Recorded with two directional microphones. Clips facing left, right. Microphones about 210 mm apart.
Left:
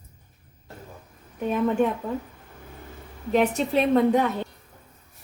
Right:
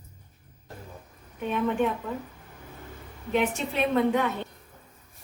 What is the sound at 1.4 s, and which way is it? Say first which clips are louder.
Speech: left 4 dB; 40° left (ahead or behind).